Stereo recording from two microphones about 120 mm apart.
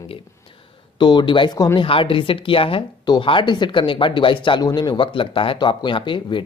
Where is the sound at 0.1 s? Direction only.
50° left (ahead or behind).